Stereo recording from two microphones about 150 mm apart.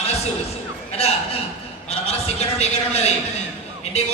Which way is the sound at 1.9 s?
45° left (ahead or behind).